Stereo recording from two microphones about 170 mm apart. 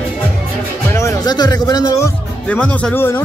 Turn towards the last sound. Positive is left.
turn(degrees=10)  # may be behind; listen again after turning